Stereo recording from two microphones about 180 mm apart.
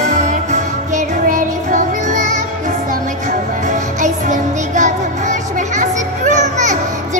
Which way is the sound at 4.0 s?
45° right (ahead or behind).